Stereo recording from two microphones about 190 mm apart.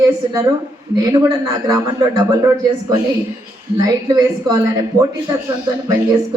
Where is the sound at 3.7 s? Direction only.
20° right (ahead or behind).